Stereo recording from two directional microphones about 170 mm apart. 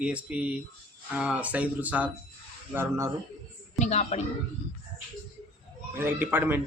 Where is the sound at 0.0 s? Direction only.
5° right (ahead or behind).